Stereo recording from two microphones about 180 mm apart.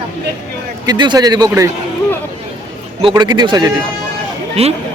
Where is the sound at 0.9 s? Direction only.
25° right (ahead or behind).